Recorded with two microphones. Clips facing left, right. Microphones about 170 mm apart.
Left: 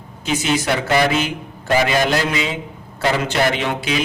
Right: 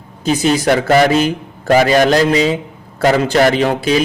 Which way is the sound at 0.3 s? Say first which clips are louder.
Right 6 dB; 35° right (ahead or behind).